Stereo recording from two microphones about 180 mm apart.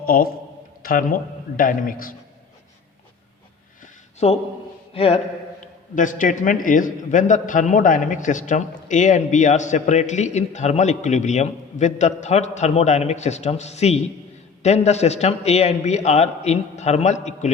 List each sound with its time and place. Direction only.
0.0 s a man's voice: 55° left (ahead or behind)
4.2 s a man's voice: 35° left (ahead or behind)
5.9 s a man's voice: 45° left (ahead or behind)